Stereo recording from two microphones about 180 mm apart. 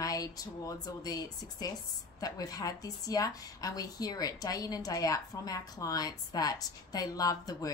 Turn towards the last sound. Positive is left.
turn(degrees=20)  # may be behind; listen again after turning